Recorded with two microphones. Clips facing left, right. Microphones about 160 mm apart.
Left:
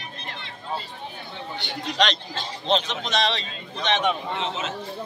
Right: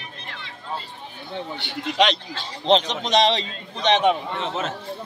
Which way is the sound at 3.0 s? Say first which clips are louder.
Right 6 dB; 20° right (ahead or behind).